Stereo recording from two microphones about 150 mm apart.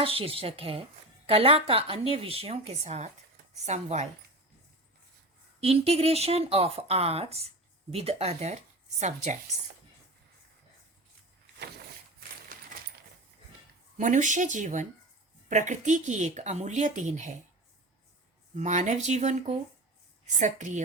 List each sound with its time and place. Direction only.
0.0 s a woman's voice: 40° right (ahead or behind)
5.5 s speech: 40° right (ahead or behind)
14.0 s speech: 55° right (ahead or behind)
18.5 s speech: 55° right (ahead or behind)